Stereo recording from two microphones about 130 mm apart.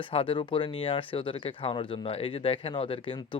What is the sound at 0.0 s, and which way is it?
Speech, 45° left (ahead or behind).